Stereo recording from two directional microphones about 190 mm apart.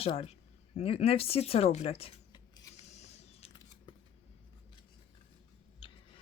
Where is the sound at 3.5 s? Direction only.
20° left (ahead or behind).